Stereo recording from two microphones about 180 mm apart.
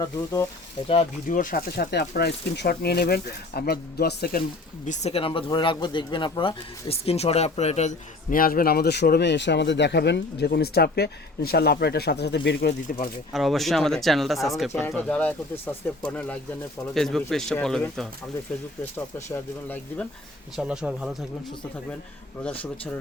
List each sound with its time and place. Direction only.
0.0 s speech: 20° left (ahead or behind)
1.3 s speech: 50° left (ahead or behind)
4.9 s speech: 35° left (ahead or behind); by 13.1 s 55° left (ahead or behind)
13.3 s speech: centre (ahead or behind)
14.7 s speech: 15° left (ahead or behind)
20.6 s speech: 5° right (ahead or behind)